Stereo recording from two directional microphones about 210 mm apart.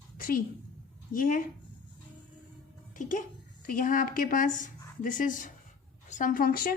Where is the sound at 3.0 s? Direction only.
35° left (ahead or behind).